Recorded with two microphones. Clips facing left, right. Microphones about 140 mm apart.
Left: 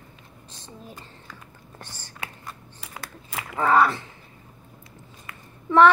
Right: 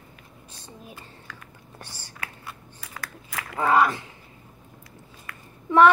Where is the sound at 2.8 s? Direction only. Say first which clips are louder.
Even; 25° left (ahead or behind).